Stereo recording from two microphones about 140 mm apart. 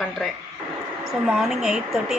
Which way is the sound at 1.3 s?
Centre (ahead or behind).